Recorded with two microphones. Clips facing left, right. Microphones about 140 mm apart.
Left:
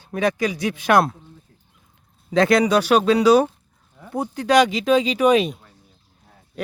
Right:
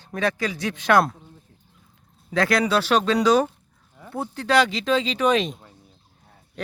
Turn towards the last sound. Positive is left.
turn(degrees=10)  # may be behind; listen again after turning